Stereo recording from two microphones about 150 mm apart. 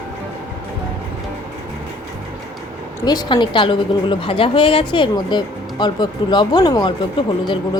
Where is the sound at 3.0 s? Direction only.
30° left (ahead or behind).